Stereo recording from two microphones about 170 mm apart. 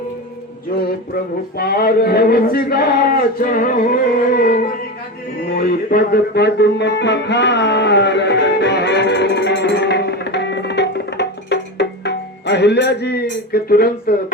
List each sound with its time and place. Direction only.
0.7 s speech: 60° left (ahead or behind)
5.5 s music: 60° left (ahead or behind)